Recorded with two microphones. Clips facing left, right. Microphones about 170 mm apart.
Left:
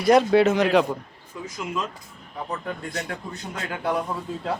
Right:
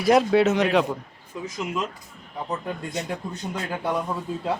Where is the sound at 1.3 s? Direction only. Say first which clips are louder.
Right 2 dB; 20° right (ahead or behind).